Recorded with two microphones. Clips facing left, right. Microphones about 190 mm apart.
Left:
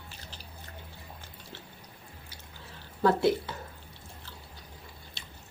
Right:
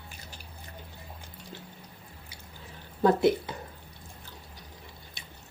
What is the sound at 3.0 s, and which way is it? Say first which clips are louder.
Speech: right 2 dB; 20° right (ahead or behind).